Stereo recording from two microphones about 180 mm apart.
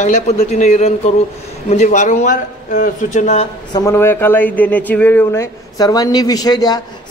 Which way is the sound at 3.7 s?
15° left (ahead or behind).